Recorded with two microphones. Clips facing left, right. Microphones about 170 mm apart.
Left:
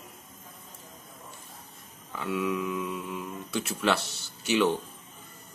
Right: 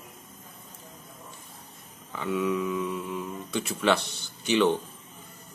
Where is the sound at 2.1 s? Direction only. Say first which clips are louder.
Right 2 dB; centre (ahead or behind).